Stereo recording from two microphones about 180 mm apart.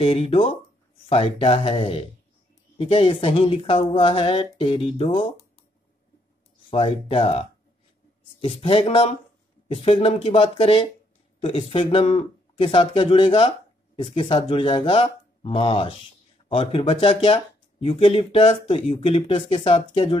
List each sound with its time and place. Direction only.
0.0 s speech: 30° left (ahead or behind)
6.7 s speech: 30° left (ahead or behind)